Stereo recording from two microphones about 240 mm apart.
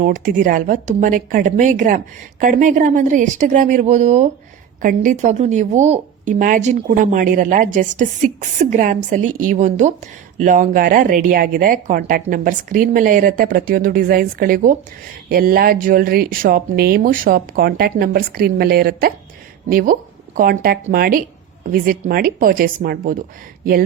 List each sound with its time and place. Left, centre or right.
0.0 s speech: right